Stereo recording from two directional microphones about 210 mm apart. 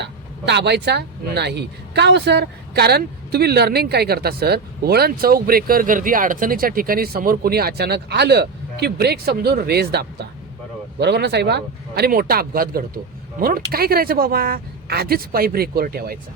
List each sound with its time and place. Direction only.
0.0 s speech: 55° right (ahead or behind)